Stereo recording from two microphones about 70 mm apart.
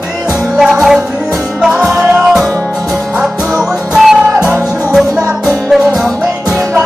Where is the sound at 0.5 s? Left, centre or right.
Centre.